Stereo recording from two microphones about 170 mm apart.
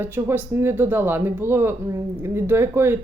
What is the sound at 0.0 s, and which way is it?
Speech, 15° right (ahead or behind).